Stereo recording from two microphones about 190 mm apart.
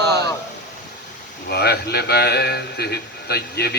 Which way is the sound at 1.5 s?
55° left (ahead or behind).